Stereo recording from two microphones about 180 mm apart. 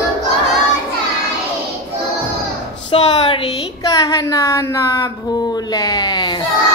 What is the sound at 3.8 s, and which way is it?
Speech, 20° left (ahead or behind).